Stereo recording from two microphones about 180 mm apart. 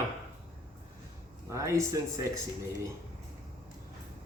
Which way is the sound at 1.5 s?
15° right (ahead or behind).